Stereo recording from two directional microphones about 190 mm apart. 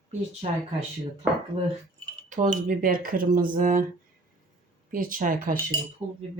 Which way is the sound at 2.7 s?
50° right (ahead or behind).